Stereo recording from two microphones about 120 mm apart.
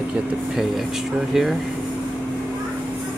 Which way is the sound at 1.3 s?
Centre (ahead or behind).